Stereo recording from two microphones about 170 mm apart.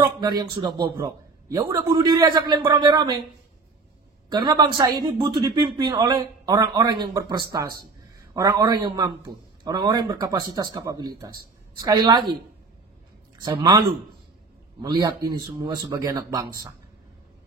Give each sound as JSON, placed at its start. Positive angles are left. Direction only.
{"t": 0.0, "sound": "speech", "side_deg": -25}
{"t": 4.3, "sound": "speech", "side_deg": -25}
{"t": 13.4, "sound": "speech", "side_deg": -25}
{"t": 14.8, "sound": "speech", "side_deg": -25}